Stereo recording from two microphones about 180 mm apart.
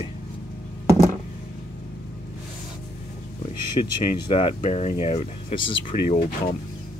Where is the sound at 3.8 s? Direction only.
35° left (ahead or behind).